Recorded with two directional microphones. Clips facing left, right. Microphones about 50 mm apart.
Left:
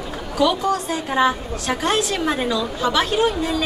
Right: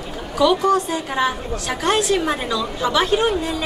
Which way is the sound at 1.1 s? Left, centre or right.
Centre.